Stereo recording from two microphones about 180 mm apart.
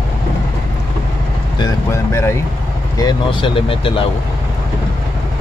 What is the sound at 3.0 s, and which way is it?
Speech, 25° left (ahead or behind).